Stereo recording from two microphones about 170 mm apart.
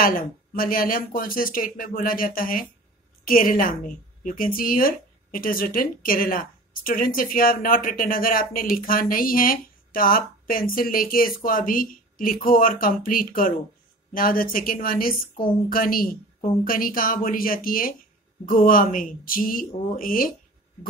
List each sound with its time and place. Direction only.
0.0 s a woman's voice: 55° left (ahead or behind)